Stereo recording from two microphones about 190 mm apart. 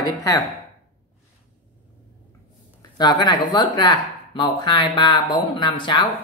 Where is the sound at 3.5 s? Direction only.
25° left (ahead or behind).